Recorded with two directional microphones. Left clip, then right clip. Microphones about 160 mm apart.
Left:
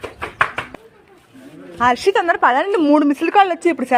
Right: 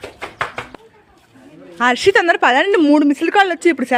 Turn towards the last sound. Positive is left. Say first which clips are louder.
# right 2 dB
turn(degrees=-35)  # may be behind; listen again after turning